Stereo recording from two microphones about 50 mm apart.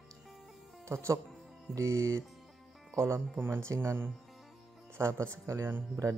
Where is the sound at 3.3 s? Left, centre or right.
Right.